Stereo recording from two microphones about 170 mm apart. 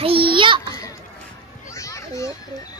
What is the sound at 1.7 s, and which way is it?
Children playing, 20° left (ahead or behind).